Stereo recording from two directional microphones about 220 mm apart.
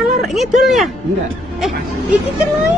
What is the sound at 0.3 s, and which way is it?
Speech, centre (ahead or behind).